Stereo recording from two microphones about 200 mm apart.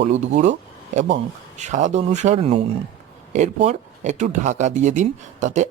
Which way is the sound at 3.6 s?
35° right (ahead or behind).